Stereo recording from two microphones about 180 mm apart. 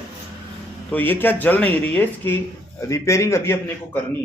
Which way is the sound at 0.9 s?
10° left (ahead or behind).